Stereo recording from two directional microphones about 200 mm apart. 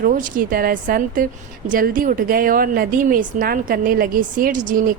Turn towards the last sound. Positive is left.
turn(degrees=-40)  # may be behind; listen again after turning